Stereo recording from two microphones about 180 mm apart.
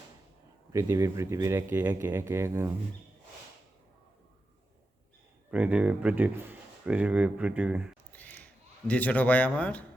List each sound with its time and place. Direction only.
0.7 s speech: 15° right (ahead or behind)
5.5 s speech: 5° right (ahead or behind)
8.1 s a sound: 10° left (ahead or behind)
8.9 s speech: 10° left (ahead or behind)